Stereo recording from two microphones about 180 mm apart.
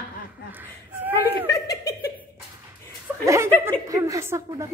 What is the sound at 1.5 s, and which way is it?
Speech, 20° left (ahead or behind).